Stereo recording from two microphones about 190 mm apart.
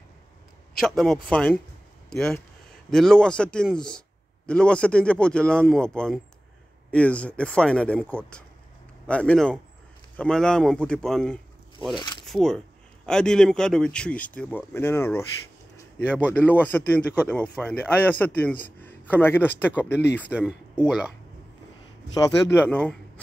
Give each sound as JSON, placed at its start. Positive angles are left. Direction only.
{"t": 0.7, "sound": "a man's voice", "side_deg": 0}
{"t": 12.0, "sound": "zipper", "side_deg": 25}
{"t": 12.3, "sound": "a man's voice", "side_deg": 5}
{"t": 16.3, "sound": "a man's voice", "side_deg": 10}
{"t": 20.3, "sound": "a man's voice", "side_deg": -5}
{"t": 22.1, "sound": "a man's voice", "side_deg": 10}